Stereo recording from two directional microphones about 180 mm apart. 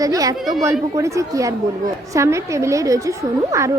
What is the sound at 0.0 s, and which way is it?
A woman's voice, 20° right (ahead or behind).